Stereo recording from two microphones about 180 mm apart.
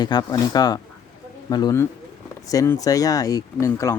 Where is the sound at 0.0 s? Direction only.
20° left (ahead or behind).